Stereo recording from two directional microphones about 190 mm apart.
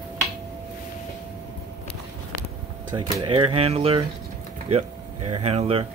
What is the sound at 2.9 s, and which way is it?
Speech, 25° right (ahead or behind).